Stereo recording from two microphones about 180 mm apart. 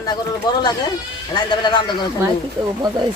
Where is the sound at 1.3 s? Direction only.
25° left (ahead or behind).